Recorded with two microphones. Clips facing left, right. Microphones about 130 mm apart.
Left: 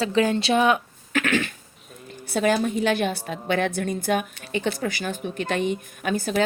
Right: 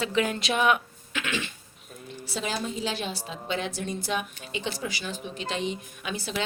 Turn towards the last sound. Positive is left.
turn(degrees=50)  # may be behind; listen again after turning